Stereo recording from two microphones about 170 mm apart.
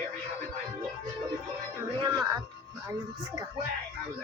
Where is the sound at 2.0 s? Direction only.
20° right (ahead or behind).